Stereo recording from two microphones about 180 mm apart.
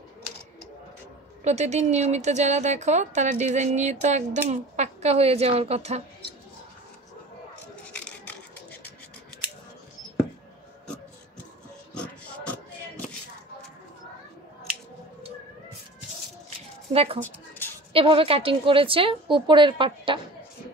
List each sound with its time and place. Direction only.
1.4 s speech: 40° right (ahead or behind)
16.9 s a woman's voice: 35° right (ahead or behind)
17.2 s a sound: 10° left (ahead or behind)
17.9 s a woman's voice: 30° right (ahead or behind)